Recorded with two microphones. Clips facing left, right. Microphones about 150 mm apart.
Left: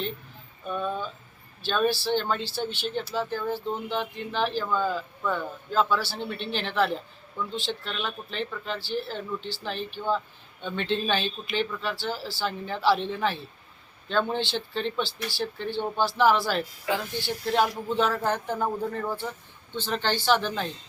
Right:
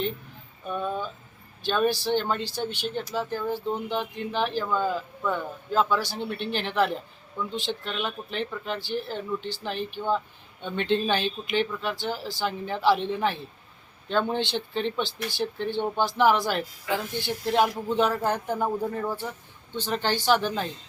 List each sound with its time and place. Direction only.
0.7 s speech: 10° right (ahead or behind)